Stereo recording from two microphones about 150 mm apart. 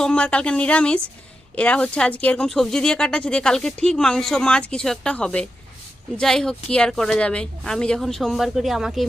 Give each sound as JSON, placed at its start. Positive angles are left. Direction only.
{"t": 0.0, "sound": "a woman's voice", "side_deg": 5}